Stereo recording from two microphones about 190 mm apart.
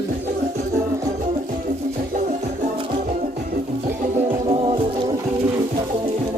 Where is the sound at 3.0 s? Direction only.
40° right (ahead or behind).